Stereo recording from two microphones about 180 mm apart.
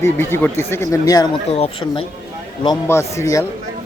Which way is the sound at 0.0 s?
15° left (ahead or behind).